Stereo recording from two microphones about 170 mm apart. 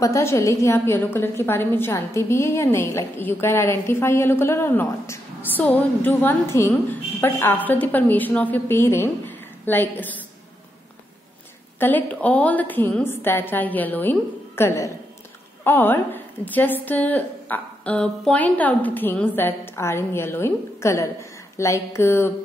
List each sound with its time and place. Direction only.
0.0 s a woman's voice: 15° left (ahead or behind)
11.8 s a woman's voice: 10° left (ahead or behind)